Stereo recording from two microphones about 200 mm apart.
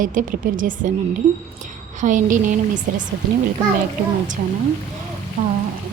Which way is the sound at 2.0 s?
40° right (ahead or behind).